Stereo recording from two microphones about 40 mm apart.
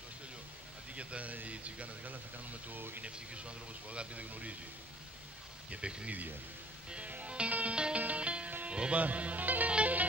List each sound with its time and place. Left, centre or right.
0.9 s speech: right
2.7 s speech: right
3.0 s speech: right
5.7 s speech: right
7.1 s music: right
8.9 s speech: right
9.7 s music: right